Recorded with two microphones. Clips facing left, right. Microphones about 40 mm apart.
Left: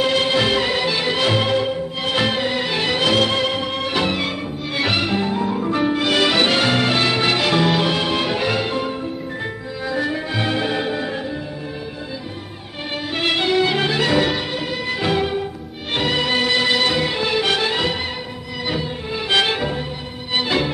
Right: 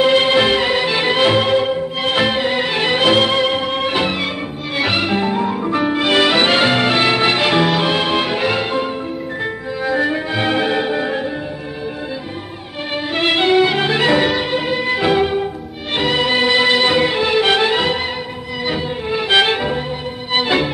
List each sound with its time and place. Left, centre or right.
0.0 s music: right
12.9 s music: centre